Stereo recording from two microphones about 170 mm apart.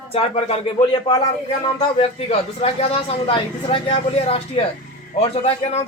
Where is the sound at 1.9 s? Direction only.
35° left (ahead or behind).